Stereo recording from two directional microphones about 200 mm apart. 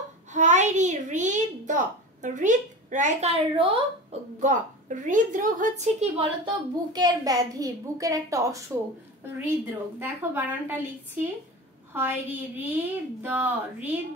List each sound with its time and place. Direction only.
0.3 s a sound: 35° right (ahead or behind)
4.4 s a woman's voice: 40° right (ahead or behind); by 8.6 s 15° right (ahead or behind)
9.7 s a woman's voice: 10° right (ahead or behind)
11.9 s a woman's voice: 10° right (ahead or behind)